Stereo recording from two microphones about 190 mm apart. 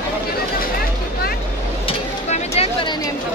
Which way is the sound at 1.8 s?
30° left (ahead or behind).